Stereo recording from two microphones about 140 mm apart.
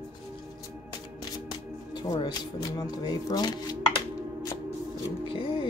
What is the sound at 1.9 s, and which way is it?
Speech, 30° left (ahead or behind).